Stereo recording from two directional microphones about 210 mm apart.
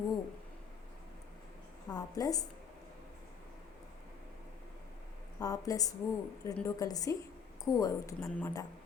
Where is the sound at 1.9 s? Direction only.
15° left (ahead or behind).